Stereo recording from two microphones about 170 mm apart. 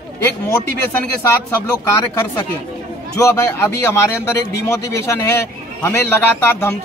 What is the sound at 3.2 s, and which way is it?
A man's voice, 15° left (ahead or behind).